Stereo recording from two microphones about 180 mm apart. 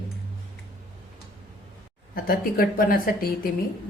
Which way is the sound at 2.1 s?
55° left (ahead or behind).